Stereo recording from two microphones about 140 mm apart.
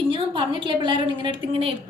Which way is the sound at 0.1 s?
35° right (ahead or behind).